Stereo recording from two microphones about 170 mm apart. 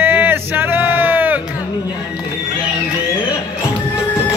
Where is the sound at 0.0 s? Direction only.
10° right (ahead or behind).